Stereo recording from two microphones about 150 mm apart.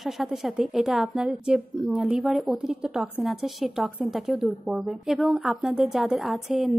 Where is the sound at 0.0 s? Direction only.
Centre (ahead or behind).